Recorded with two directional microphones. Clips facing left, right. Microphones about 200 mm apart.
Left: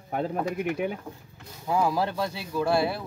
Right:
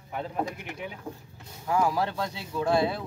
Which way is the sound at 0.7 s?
50° left (ahead or behind).